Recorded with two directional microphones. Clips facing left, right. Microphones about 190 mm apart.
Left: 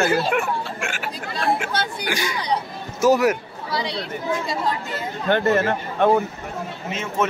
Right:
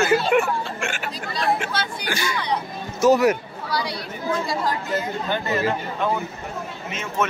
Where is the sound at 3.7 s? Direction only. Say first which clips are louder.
Left 1 dB; 25° left (ahead or behind).